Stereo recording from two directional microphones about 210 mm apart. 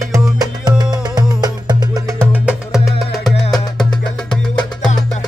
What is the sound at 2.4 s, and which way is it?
Music, centre (ahead or behind).